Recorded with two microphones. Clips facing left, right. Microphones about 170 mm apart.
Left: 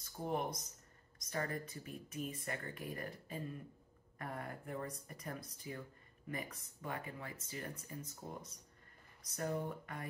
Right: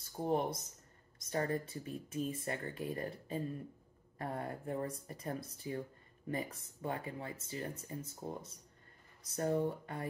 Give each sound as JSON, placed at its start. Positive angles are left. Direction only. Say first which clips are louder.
{"t": 0.2, "sound": "speech", "louder": "right 5 dB", "side_deg": -30}